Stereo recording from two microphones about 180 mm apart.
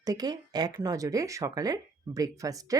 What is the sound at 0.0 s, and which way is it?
Speech, 20° right (ahead or behind).